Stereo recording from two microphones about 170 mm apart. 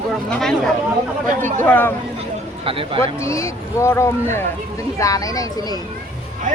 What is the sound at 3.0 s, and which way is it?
Speech, 15° left (ahead or behind).